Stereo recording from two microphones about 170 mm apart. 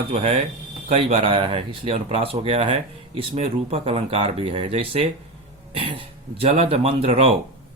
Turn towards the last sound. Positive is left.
turn(degrees=-35)  # may be behind; listen again after turning